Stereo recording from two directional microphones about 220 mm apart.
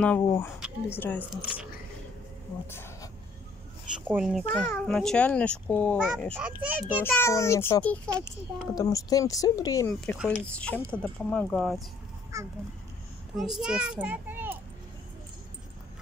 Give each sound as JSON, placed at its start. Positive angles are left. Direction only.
{"t": 0.0, "sound": "speech", "side_deg": 5}
{"t": 2.6, "sound": "a sound", "side_deg": 10}
{"t": 4.1, "sound": "a child's voice", "side_deg": -5}
{"t": 7.0, "sound": "speech", "side_deg": 10}
{"t": 9.9, "sound": "speech", "side_deg": 0}
{"t": 12.3, "sound": "a sound", "side_deg": -15}
{"t": 13.4, "sound": "a child's voice", "side_deg": 0}